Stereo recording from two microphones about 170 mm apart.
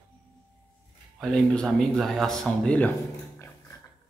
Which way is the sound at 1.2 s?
5° left (ahead or behind).